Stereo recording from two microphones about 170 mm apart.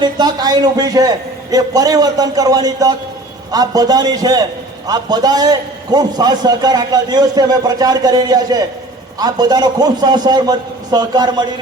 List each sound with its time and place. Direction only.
0.0 s a man's voice: 25° right (ahead or behind)